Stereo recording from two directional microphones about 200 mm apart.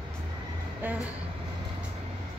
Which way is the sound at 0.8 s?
10° right (ahead or behind).